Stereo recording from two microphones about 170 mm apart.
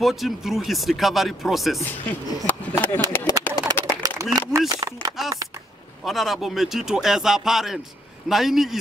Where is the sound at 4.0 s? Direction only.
20° right (ahead or behind).